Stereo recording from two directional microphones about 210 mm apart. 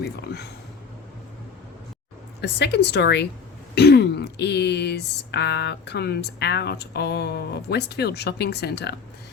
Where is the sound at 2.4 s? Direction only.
55° left (ahead or behind).